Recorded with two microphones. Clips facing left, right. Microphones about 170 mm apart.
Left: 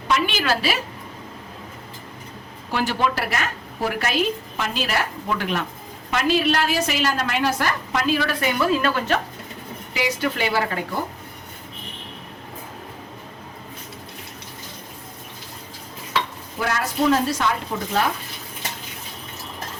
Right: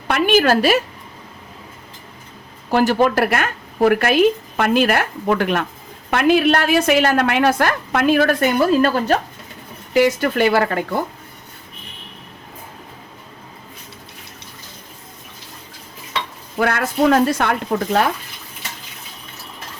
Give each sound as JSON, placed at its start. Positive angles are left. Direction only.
{"t": 0.1, "sound": "speech", "side_deg": -50}
{"t": 2.6, "sound": "a woman's voice", "side_deg": -45}
{"t": 9.9, "sound": "speech", "side_deg": -50}
{"t": 16.6, "sound": "a woman's voice", "side_deg": -60}